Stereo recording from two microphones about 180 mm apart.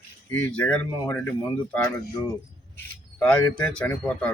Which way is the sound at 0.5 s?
5° left (ahead or behind).